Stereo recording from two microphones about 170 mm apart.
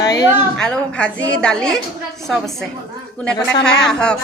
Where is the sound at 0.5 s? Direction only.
5° left (ahead or behind).